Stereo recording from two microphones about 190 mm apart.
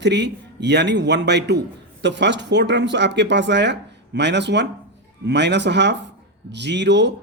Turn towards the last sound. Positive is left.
turn(degrees=-65)  # may be behind; listen again after turning